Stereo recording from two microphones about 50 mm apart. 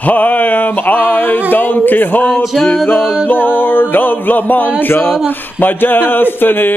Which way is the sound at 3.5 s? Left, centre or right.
Left.